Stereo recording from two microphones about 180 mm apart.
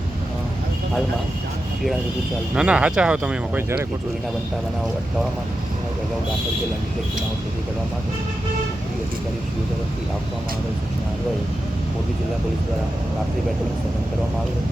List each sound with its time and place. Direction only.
2.6 s speech: 5° right (ahead or behind)